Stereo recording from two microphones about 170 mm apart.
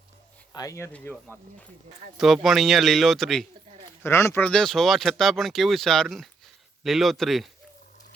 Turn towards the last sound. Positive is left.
turn(degrees=0)  # may be behind; listen again after turning